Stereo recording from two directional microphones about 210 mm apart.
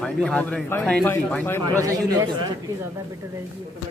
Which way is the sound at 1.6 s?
15° right (ahead or behind).